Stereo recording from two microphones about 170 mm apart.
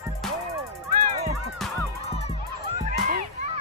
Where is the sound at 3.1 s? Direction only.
45° right (ahead or behind).